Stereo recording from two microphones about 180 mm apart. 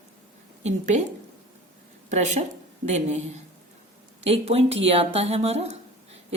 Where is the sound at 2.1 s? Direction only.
40° right (ahead or behind).